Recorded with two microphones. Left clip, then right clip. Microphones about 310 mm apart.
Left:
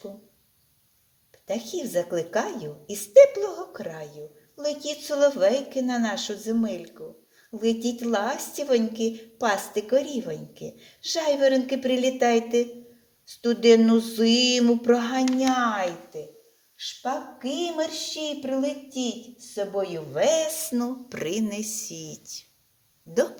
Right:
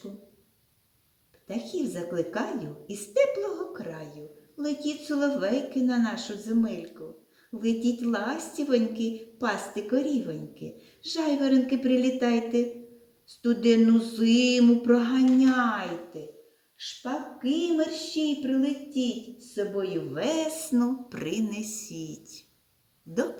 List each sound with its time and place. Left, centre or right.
1.5 s a woman's voice: left
17.0 s a woman's voice: left